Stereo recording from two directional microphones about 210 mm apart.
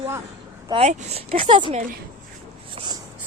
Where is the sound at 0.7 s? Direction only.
30° right (ahead or behind).